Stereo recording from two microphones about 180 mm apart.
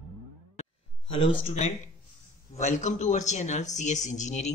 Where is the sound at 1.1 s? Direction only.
30° left (ahead or behind).